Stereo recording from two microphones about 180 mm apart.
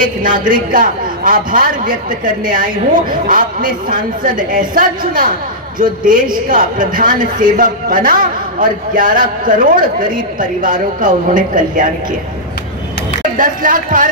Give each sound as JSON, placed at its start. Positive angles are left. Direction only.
{"t": 0.0, "sound": "a man's voice", "side_deg": -50}
{"t": 13.4, "sound": "a man's voice", "side_deg": -50}